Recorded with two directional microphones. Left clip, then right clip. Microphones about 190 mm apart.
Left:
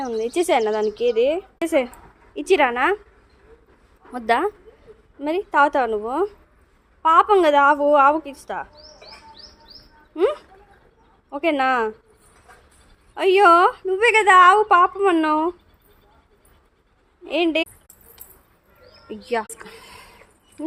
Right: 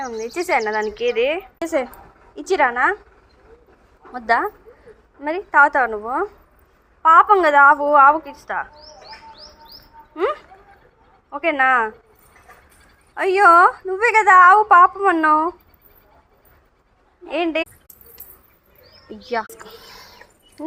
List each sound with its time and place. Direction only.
0.2 s a woman's voice: 45° left (ahead or behind)
4.1 s a woman's voice: 35° left (ahead or behind)
7.0 s a woman's voice: 35° left (ahead or behind)
10.2 s a woman's voice: 40° left (ahead or behind)
13.1 s a woman's voice: 30° left (ahead or behind)
17.2 s a woman's voice: 30° left (ahead or behind)
19.0 s speech: 20° left (ahead or behind)